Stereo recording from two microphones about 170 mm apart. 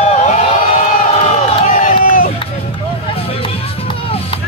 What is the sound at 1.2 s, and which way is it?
Crowd, 40° left (ahead or behind).